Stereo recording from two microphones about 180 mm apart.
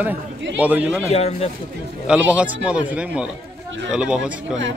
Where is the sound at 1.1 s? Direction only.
35° left (ahead or behind).